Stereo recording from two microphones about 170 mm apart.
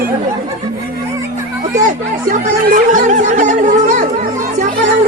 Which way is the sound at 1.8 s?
50° right (ahead or behind).